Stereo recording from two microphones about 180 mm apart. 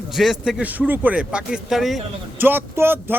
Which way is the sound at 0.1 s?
Centre (ahead or behind).